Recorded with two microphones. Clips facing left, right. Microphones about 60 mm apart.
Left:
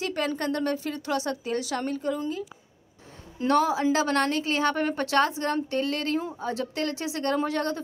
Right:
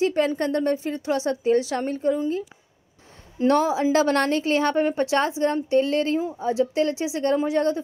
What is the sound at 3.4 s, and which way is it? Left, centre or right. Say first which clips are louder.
A woman's voice: right 3 dB; right.